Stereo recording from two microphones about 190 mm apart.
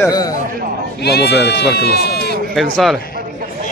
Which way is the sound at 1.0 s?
60° left (ahead or behind).